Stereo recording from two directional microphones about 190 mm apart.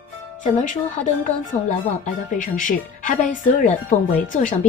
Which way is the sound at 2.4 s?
45° left (ahead or behind).